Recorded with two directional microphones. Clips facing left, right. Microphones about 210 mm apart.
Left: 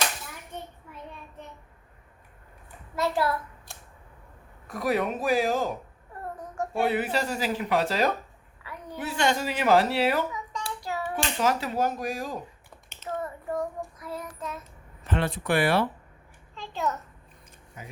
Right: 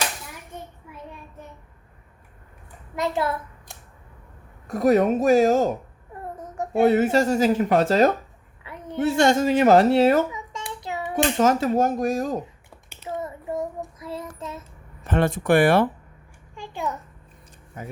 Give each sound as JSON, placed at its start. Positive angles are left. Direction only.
{"t": 2.9, "sound": "a child's voice", "side_deg": -20}
{"t": 4.7, "sound": "speech", "side_deg": -45}
{"t": 6.3, "sound": "child singing", "side_deg": -20}
{"t": 6.8, "sound": "speech", "side_deg": -45}
{"t": 8.6, "sound": "a sound", "side_deg": -25}
{"t": 9.1, "sound": "speech", "side_deg": -45}
{"t": 10.3, "sound": "child singing", "side_deg": -25}
{"t": 11.2, "sound": "speech", "side_deg": -45}
{"t": 12.7, "sound": "child singing", "side_deg": -10}
{"t": 15.0, "sound": "speech", "side_deg": -45}
{"t": 16.6, "sound": "a sound", "side_deg": -15}
{"t": 17.8, "sound": "speech", "side_deg": -50}